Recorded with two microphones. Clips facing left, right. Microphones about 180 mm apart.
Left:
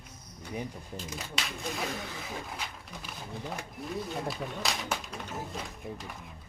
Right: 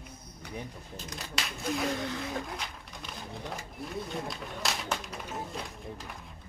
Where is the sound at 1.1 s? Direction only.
Centre (ahead or behind).